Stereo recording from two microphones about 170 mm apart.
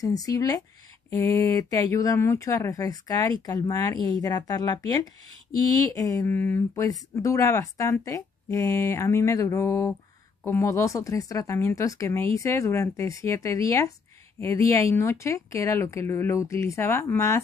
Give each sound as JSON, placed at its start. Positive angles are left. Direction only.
{"t": 0.0, "sound": "speech", "side_deg": 20}